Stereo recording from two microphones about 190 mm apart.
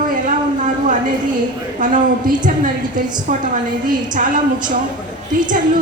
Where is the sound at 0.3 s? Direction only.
40° right (ahead or behind).